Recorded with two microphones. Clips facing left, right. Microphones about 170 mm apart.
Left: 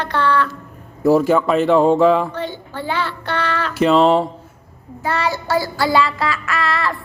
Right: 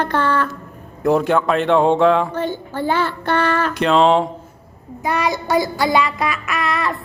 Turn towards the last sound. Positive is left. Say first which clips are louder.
# even
turn(degrees=-20)  # may be behind; listen again after turning